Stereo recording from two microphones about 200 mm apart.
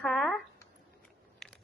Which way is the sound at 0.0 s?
5° left (ahead or behind).